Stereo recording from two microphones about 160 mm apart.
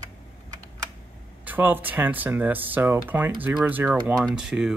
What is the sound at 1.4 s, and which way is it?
Speech, 10° right (ahead or behind).